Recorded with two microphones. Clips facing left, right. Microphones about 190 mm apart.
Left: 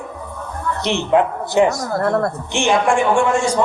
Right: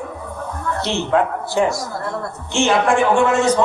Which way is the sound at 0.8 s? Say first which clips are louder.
Left 2 dB; 20° left (ahead or behind).